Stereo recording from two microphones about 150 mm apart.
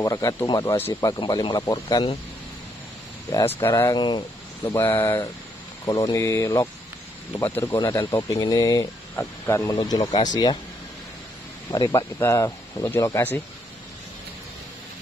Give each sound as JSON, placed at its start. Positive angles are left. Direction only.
{"t": 0.0, "sound": "speech", "side_deg": 20}
{"t": 3.3, "sound": "speech", "side_deg": 15}
{"t": 11.7, "sound": "speech", "side_deg": 30}
{"t": 12.7, "sound": "speech", "side_deg": 15}